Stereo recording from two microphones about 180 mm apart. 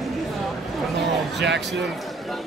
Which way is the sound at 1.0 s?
75° right (ahead or behind).